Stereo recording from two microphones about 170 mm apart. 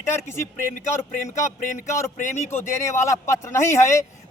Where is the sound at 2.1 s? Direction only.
45° left (ahead or behind).